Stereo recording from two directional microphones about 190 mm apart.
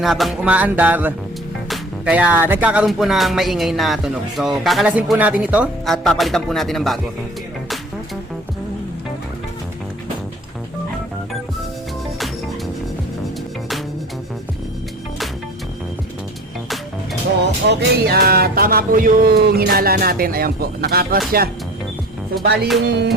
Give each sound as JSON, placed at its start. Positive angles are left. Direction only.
{"t": 0.0, "sound": "music", "side_deg": 0}
{"t": 17.7, "sound": "music", "side_deg": -60}
{"t": 22.4, "sound": "music", "side_deg": -60}